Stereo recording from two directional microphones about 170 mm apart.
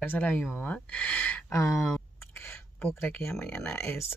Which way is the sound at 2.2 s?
15° left (ahead or behind).